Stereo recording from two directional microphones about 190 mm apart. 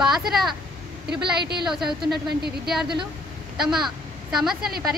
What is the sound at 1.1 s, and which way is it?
Speech, 60° right (ahead or behind).